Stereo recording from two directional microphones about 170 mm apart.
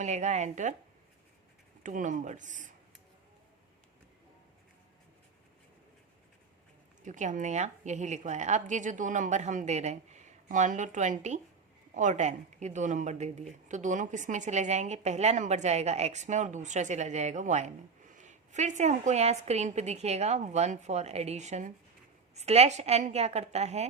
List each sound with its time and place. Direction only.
0.0 s speech: 45° right (ahead or behind)
1.8 s speech: 50° right (ahead or behind)
7.0 s a woman's voice: 45° right (ahead or behind)